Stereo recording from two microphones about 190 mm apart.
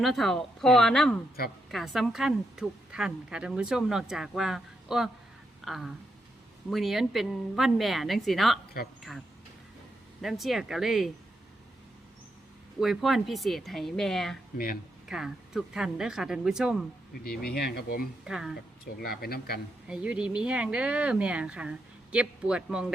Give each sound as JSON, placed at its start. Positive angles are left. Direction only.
{"t": 0.0, "sound": "a woman's voice", "side_deg": 0}
{"t": 12.8, "sound": "a woman's voice", "side_deg": 0}
{"t": 17.5, "sound": "speech", "side_deg": 55}
{"t": 18.3, "sound": "a woman's voice", "side_deg": 0}
{"t": 18.9, "sound": "speech", "side_deg": 50}
{"t": 19.9, "sound": "a woman's voice", "side_deg": -5}